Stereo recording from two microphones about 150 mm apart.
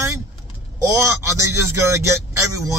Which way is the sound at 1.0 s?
20° right (ahead or behind).